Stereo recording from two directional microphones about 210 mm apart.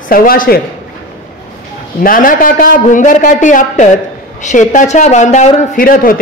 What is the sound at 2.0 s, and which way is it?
A man's voice, 40° left (ahead or behind).